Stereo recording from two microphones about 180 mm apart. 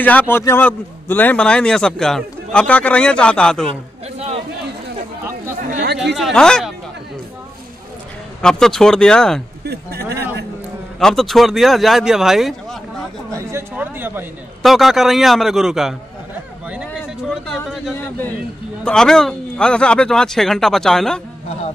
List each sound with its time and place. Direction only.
0.0 s a man's voice: 10° left (ahead or behind)
6.1 s a man's voice: centre (ahead or behind)
8.4 s a man's voice: 5° left (ahead or behind)
9.7 s speech: 65° right (ahead or behind)
11.0 s a man's voice: centre (ahead or behind)
13.3 s a sound: 15° right (ahead or behind)
14.6 s a man's voice: centre (ahead or behind)
16.6 s a sound: 5° right (ahead or behind)
18.9 s a man's voice: 5° left (ahead or behind)